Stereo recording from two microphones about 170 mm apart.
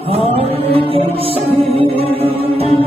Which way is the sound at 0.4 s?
35° right (ahead or behind).